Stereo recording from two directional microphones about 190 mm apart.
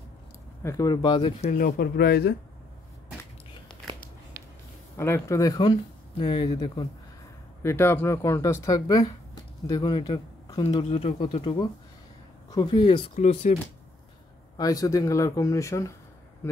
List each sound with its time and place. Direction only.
0.6 s speech: 15° left (ahead or behind)
1.4 s speech: 45° left (ahead or behind)
4.9 s speech: 15° left (ahead or behind)
13.1 s speech: 35° left (ahead or behind)
14.6 s speech: 20° left (ahead or behind)